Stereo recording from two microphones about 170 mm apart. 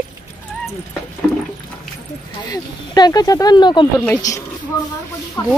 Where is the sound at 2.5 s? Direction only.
25° left (ahead or behind).